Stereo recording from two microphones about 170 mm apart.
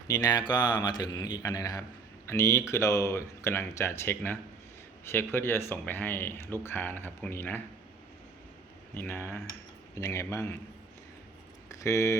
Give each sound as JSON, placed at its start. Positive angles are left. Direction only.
{"t": 0.1, "sound": "a man's voice", "side_deg": 20}
{"t": 9.0, "sound": "speech", "side_deg": 10}
{"t": 11.7, "sound": "speech", "side_deg": 20}